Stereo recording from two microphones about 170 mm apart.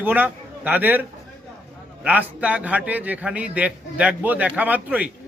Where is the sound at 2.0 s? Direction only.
10° right (ahead or behind).